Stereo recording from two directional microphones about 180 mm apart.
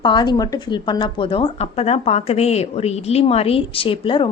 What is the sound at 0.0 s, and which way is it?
Speech, 25° left (ahead or behind).